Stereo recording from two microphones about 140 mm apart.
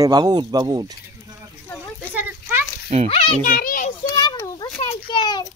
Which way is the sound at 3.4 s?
85° left.